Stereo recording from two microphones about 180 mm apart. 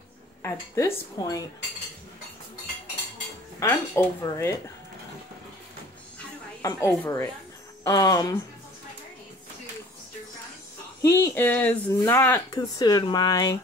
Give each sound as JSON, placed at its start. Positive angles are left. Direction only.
{"t": 0.4, "sound": "speech", "side_deg": 15}
{"t": 3.5, "sound": "speech", "side_deg": 15}
{"t": 6.6, "sound": "speech", "side_deg": 15}
{"t": 11.0, "sound": "speech", "side_deg": 15}
{"t": 12.5, "sound": "speech", "side_deg": 20}